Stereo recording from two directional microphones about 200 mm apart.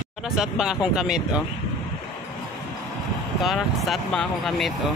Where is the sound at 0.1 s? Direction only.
5° right (ahead or behind).